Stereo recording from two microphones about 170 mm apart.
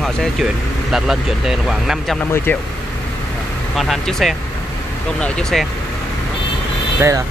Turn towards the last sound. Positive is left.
turn(degrees=-20)  # may be behind; listen again after turning